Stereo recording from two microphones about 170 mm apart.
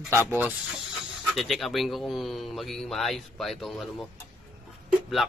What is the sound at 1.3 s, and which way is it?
Speech, centre (ahead or behind).